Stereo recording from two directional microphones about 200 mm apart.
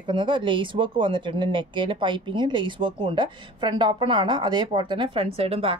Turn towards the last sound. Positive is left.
turn(degrees=-30)  # may be behind; listen again after turning